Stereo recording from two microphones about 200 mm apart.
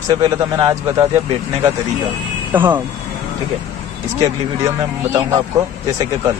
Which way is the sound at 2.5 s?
10° right (ahead or behind).